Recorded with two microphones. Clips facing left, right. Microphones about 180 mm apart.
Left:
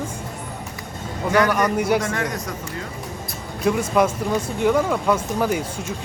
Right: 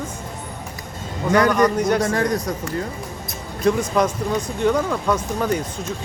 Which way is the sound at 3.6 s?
5° left (ahead or behind).